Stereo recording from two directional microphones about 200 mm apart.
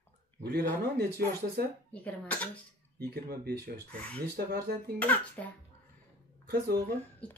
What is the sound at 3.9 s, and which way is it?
Speech, 5° left (ahead or behind).